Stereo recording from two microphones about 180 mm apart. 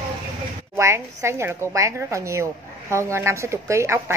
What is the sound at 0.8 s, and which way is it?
Speech, 15° right (ahead or behind).